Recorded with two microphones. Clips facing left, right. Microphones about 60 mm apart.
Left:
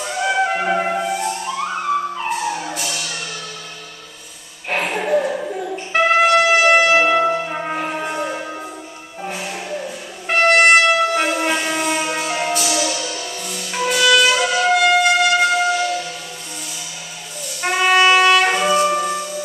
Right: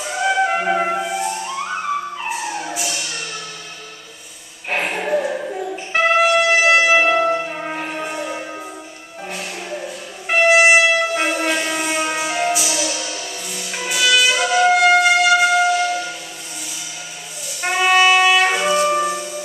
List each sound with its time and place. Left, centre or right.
0.3 s music: centre
4.6 s music: centre
5.0 s brass instrument: centre
7.1 s brass instrument: centre
7.6 s church bell: centre
9.3 s music: centre
10.2 s brass instrument: centre
17.6 s brass instrument: centre